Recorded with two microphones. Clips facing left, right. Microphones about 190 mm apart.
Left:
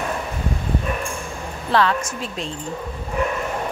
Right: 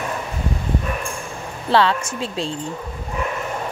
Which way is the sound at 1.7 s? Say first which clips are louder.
Right 2 dB; 30° right (ahead or behind).